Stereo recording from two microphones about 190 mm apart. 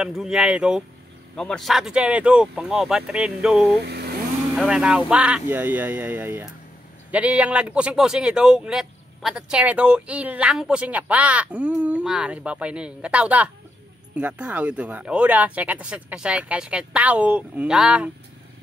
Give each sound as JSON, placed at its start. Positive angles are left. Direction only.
{"t": 0.0, "sound": "speech", "side_deg": -5}
{"t": 3.8, "sound": "speech", "side_deg": -60}
{"t": 4.6, "sound": "speech", "side_deg": -5}